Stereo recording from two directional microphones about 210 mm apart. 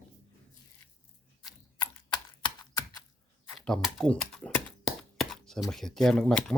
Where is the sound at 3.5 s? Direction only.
Centre (ahead or behind).